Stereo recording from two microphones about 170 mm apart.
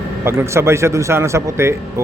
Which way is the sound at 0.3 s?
15° right (ahead or behind).